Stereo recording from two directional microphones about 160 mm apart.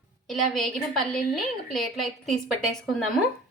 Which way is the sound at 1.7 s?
Centre (ahead or behind).